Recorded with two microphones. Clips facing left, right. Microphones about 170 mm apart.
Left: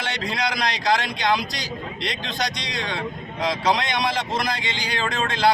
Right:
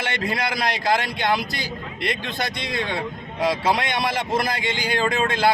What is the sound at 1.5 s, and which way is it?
Speech, 55° right (ahead or behind).